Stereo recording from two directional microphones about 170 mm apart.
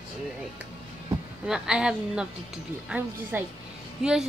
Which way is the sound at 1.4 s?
5° right (ahead or behind).